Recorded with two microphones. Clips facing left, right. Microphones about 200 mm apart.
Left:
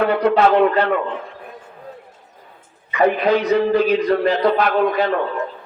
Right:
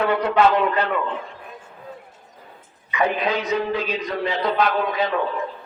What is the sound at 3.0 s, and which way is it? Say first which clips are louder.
A man's voice: left 6 dB; 60° left (ahead or behind).